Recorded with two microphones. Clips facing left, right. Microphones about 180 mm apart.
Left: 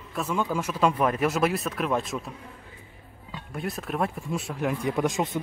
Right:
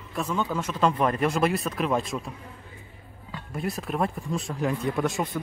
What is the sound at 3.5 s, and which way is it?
Speech, centre (ahead or behind).